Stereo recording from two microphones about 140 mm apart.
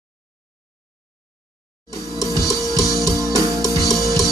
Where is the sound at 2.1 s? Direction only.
25° right (ahead or behind).